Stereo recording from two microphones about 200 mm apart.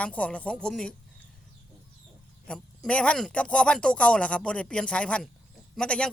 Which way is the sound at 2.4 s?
5° left (ahead or behind).